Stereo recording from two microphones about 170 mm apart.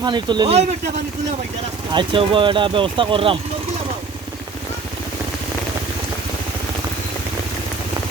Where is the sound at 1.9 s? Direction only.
30° right (ahead or behind).